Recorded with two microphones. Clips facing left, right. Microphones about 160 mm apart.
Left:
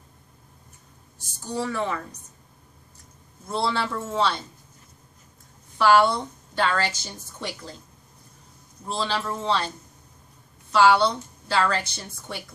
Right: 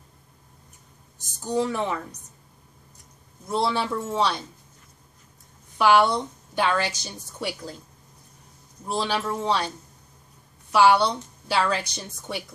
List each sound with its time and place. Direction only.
1.4 s a woman's voice: 15° right (ahead or behind)
3.4 s a woman's voice: 15° right (ahead or behind)
5.8 s a woman's voice: 15° right (ahead or behind)
8.8 s a woman's voice: 15° right (ahead or behind)
10.7 s a woman's voice: 10° right (ahead or behind)